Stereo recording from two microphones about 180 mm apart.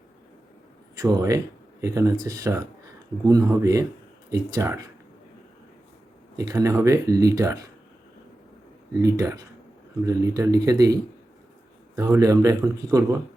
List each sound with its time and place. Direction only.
0.9 s speech: 20° right (ahead or behind)
6.3 s speech: 20° right (ahead or behind)
8.9 s a man's voice: 20° right (ahead or behind)